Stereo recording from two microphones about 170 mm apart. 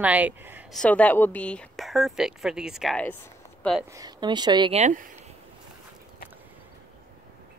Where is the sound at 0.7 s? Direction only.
5° left (ahead or behind).